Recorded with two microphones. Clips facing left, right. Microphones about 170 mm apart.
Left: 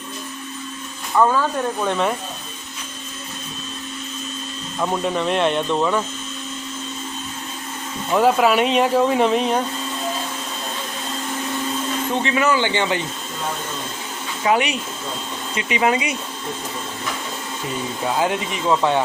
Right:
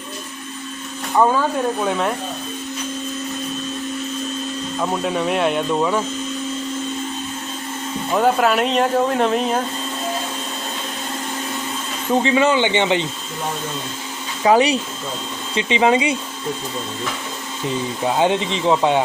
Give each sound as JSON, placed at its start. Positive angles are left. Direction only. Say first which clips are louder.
{"t": 1.1, "sound": "speech", "louder": "right 1 dB", "side_deg": -15}
{"t": 4.8, "sound": "speech", "louder": "even", "side_deg": -5}
{"t": 8.1, "sound": "speech", "louder": "left 1 dB", "side_deg": 0}
{"t": 12.1, "sound": "speech", "louder": "right 5 dB", "side_deg": -30}
{"t": 14.4, "sound": "speech", "louder": "right 5 dB", "side_deg": -35}
{"t": 18.2, "sound": "speech", "louder": "right 5 dB", "side_deg": -25}